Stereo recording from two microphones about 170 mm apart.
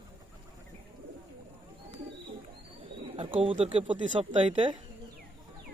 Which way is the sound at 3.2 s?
30° right (ahead or behind).